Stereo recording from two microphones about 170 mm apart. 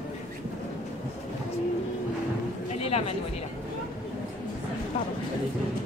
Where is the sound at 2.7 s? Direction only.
35° left (ahead or behind).